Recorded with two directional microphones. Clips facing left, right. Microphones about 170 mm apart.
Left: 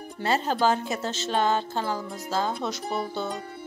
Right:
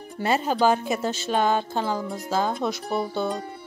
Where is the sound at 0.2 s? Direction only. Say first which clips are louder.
Right 2 dB; 15° right (ahead or behind).